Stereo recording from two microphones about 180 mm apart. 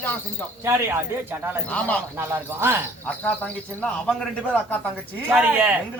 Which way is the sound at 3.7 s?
5° left (ahead or behind).